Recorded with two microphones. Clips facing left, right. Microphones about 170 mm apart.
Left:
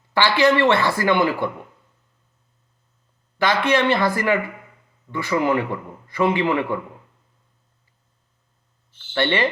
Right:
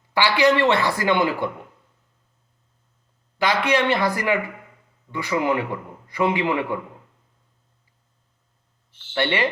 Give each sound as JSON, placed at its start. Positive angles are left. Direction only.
{"t": 0.1, "sound": "a man's voice", "side_deg": -15}
{"t": 3.3, "sound": "a man's voice", "side_deg": -15}
{"t": 9.1, "sound": "a man's voice", "side_deg": -10}